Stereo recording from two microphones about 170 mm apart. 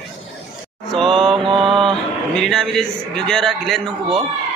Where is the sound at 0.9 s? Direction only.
Centre (ahead or behind).